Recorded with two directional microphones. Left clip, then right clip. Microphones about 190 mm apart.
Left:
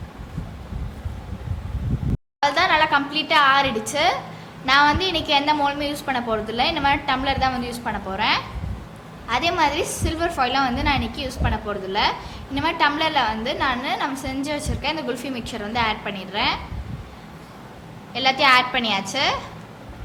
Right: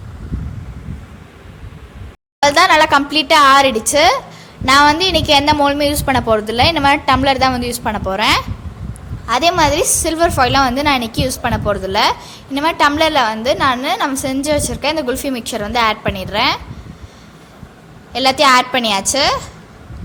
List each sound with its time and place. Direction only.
2.4 s a woman's voice: 50° right (ahead or behind)
18.1 s a woman's voice: 50° right (ahead or behind)